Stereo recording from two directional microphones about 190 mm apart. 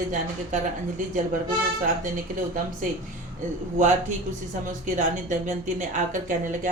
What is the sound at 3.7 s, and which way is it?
Speech, 40° right (ahead or behind).